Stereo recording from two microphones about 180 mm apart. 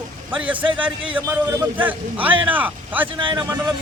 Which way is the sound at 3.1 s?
25° right (ahead or behind).